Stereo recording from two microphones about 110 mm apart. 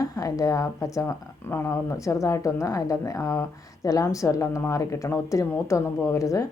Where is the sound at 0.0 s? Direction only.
30° left (ahead or behind).